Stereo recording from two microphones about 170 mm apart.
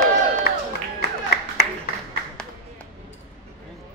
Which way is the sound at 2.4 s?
5° left (ahead or behind).